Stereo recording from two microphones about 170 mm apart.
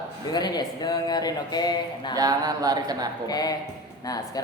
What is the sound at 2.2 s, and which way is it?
Speech, 20° right (ahead or behind).